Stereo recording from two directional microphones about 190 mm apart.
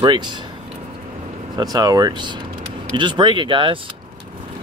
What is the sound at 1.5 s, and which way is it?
Speech, 20° right (ahead or behind).